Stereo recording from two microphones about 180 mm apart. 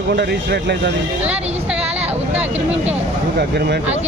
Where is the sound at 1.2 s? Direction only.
5° right (ahead or behind).